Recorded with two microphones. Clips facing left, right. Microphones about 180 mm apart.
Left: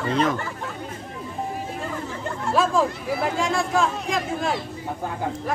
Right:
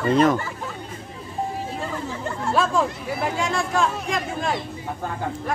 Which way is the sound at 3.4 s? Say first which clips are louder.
Even; centre (ahead or behind).